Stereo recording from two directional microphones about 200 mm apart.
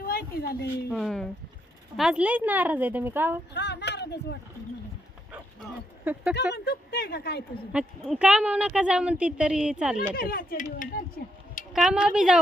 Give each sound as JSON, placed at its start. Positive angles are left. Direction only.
{"t": 0.0, "sound": "a sound", "side_deg": 50}
{"t": 0.9, "sound": "a woman's voice", "side_deg": 5}
{"t": 3.5, "sound": "speech", "side_deg": 60}
{"t": 5.7, "sound": "speech", "side_deg": -5}
{"t": 6.5, "sound": "speech", "side_deg": 55}
{"t": 7.7, "sound": "a woman's voice", "side_deg": -5}
{"t": 10.1, "sound": "speech", "side_deg": 45}
{"t": 11.7, "sound": "a woman's voice", "side_deg": -5}